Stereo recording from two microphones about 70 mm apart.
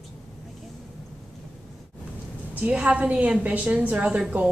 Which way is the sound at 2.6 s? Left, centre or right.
Centre.